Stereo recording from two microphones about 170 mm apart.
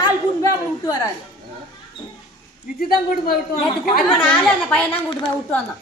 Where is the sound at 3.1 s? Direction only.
60° left (ahead or behind).